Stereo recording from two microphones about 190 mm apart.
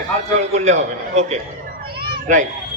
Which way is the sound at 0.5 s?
35° right (ahead or behind).